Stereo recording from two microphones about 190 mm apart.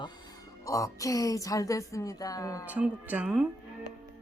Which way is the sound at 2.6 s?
10° right (ahead or behind).